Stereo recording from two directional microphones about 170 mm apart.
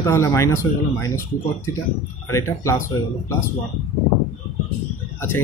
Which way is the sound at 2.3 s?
15° left (ahead or behind).